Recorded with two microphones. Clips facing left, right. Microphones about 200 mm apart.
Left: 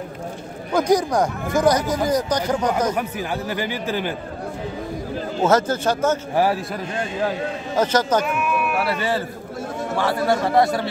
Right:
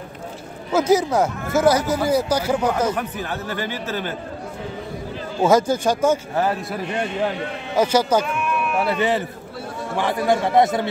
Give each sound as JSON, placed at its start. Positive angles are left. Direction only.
{"t": 0.7, "sound": "speech", "side_deg": -5}
{"t": 2.9, "sound": "speech", "side_deg": 10}
{"t": 5.4, "sound": "speech", "side_deg": -10}
{"t": 7.7, "sound": "speech", "side_deg": -10}
{"t": 8.3, "sound": "bleat", "side_deg": 5}
{"t": 8.8, "sound": "a man's voice", "side_deg": -20}